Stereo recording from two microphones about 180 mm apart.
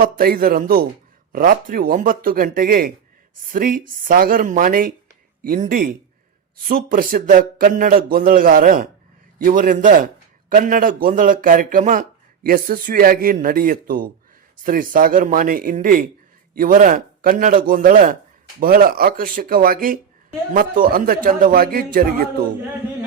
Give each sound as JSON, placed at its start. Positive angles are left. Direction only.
{"t": 0.0, "sound": "speech", "side_deg": -55}